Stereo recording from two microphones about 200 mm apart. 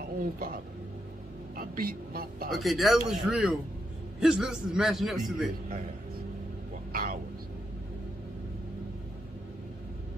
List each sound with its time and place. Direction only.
0.2 s speech: 45° right (ahead or behind)
1.6 s speech: 50° right (ahead or behind)
2.5 s speech: centre (ahead or behind)
6.9 s speech: 45° right (ahead or behind)